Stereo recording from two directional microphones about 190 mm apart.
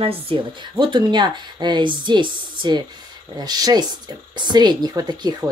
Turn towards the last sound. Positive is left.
turn(degrees=-20)  # may be behind; listen again after turning